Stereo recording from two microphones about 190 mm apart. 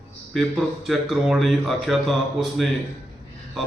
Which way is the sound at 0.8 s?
Centre (ahead or behind).